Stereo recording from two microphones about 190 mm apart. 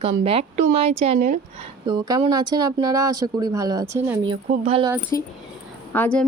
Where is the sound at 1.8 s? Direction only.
20° right (ahead or behind).